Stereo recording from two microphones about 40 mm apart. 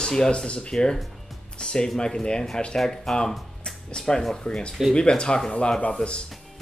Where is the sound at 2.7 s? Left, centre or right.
Centre.